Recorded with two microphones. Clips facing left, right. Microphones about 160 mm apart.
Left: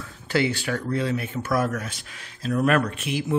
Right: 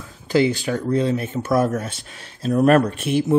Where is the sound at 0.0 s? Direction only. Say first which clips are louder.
Right 6 dB; 15° right (ahead or behind).